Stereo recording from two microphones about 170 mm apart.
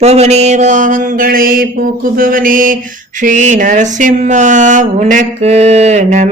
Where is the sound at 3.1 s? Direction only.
50° right (ahead or behind).